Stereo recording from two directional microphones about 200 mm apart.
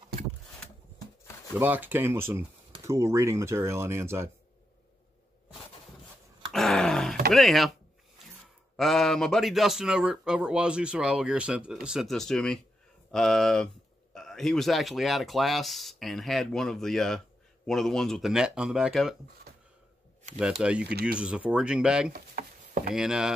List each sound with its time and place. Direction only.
1.6 s speech: 10° right (ahead or behind)
6.5 s a sound: centre (ahead or behind)
7.3 s a man's voice: centre (ahead or behind)
8.7 s a man's voice: centre (ahead or behind)
20.3 s a man's voice: 5° right (ahead or behind)
22.1 s a sound: 45° right (ahead or behind)
22.9 s a man's voice: 5° right (ahead or behind)